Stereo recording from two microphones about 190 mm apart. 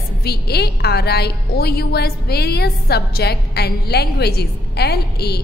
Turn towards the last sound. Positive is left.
turn(degrees=55)  # may be behind; listen again after turning